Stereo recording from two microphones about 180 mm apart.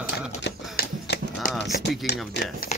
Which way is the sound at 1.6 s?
65° left (ahead or behind).